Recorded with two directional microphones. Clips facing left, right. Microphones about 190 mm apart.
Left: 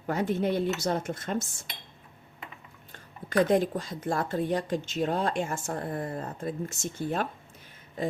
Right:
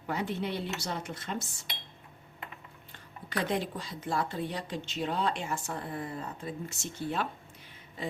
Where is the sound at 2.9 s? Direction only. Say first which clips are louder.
Left 6 dB; 45° left (ahead or behind).